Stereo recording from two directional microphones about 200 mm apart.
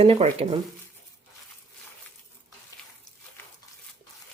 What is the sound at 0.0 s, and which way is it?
Speech, 30° right (ahead or behind).